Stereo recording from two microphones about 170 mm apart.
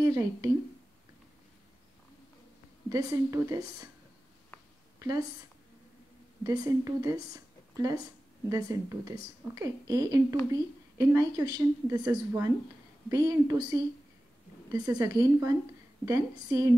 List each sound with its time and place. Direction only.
0.0 s a woman's voice: 20° right (ahead or behind)
2.9 s a woman's voice: 20° right (ahead or behind)
4.9 s a sound: 20° right (ahead or behind)
6.4 s a woman's voice: 20° right (ahead or behind)